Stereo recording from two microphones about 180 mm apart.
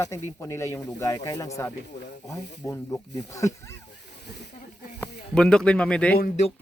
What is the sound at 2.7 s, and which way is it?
Speech, 15° left (ahead or behind).